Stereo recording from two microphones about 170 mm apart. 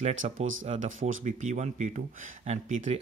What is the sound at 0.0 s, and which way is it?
Speech, 40° right (ahead or behind).